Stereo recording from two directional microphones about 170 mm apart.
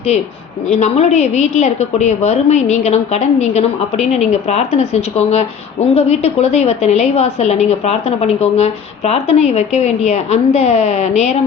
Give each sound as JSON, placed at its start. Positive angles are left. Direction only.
{"t": 0.7, "sound": "a woman's voice", "side_deg": 40}